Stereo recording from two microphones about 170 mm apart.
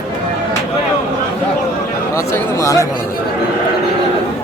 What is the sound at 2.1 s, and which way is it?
Speech, 15° left (ahead or behind).